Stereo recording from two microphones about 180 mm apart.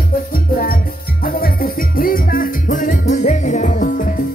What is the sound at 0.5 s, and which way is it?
Music, 50° left (ahead or behind).